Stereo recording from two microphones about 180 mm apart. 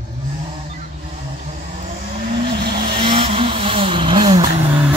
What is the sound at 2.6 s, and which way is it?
Vehicle, 25° right (ahead or behind).